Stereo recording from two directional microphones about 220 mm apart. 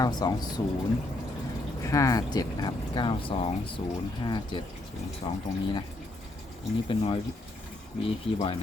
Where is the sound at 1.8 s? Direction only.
15° left (ahead or behind).